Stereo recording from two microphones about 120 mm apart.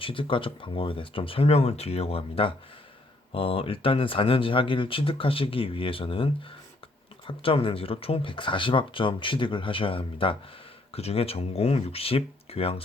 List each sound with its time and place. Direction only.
0.0 s speech: 45° left (ahead or behind)